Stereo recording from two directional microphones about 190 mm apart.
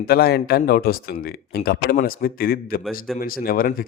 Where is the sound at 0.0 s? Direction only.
55° left (ahead or behind).